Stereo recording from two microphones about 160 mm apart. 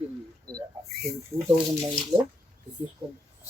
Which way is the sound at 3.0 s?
10° right (ahead or behind).